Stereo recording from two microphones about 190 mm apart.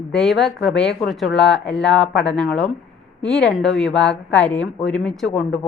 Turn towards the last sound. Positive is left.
turn(degrees=0)  # may be behind; listen again after turning